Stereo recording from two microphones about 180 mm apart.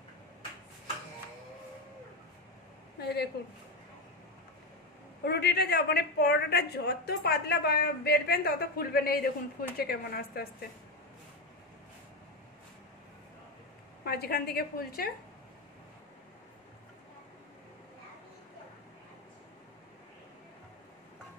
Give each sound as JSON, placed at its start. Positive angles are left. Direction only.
{"t": 3.0, "sound": "a sound", "side_deg": 65}
{"t": 5.2, "sound": "a woman's voice", "side_deg": 65}
{"t": 14.0, "sound": "a woman's voice", "side_deg": 60}